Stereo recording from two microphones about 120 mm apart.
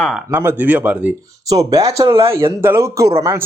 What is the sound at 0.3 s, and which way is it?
Speech, 20° right (ahead or behind).